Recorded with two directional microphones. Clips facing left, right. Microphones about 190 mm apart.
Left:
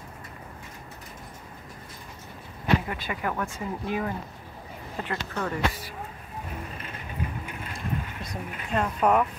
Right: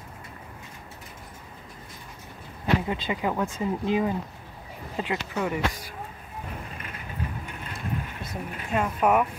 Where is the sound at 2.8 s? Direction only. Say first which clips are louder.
Right 4 dB; 20° right (ahead or behind).